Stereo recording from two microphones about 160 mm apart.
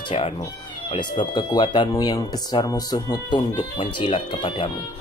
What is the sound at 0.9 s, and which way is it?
Speech, 30° left (ahead or behind).